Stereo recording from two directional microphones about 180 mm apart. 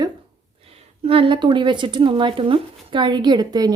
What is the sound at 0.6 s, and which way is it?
A woman's voice, 30° right (ahead or behind).